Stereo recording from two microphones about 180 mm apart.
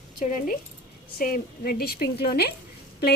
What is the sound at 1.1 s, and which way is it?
A woman's voice, 55° left (ahead or behind).